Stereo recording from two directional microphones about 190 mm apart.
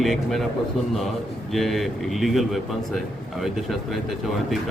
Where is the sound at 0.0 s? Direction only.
Centre (ahead or behind).